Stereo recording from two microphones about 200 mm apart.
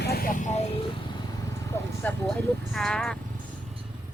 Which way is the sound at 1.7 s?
15° left (ahead or behind).